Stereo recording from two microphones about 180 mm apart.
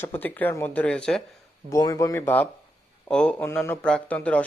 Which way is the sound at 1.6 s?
20° left (ahead or behind).